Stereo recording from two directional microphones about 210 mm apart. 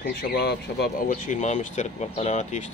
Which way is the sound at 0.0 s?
50° left (ahead or behind).